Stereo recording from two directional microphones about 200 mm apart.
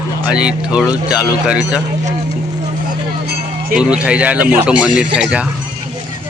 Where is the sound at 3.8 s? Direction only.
5° right (ahead or behind).